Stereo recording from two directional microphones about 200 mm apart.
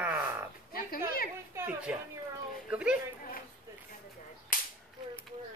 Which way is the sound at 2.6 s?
5° right (ahead or behind).